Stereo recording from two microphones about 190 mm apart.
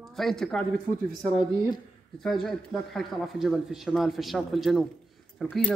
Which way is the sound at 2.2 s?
Centre (ahead or behind).